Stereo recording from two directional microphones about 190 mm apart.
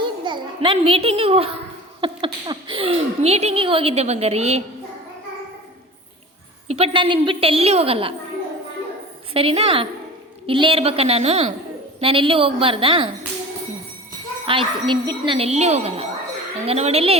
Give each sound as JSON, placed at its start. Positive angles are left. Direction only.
{"t": 0.0, "sound": "a child's voice", "side_deg": -25}
{"t": 6.7, "sound": "speech", "side_deg": -30}
{"t": 9.3, "sound": "speech", "side_deg": -30}
{"t": 14.4, "sound": "speech", "side_deg": -25}